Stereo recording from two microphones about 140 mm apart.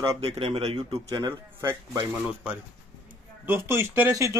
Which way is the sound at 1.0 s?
25° right (ahead or behind).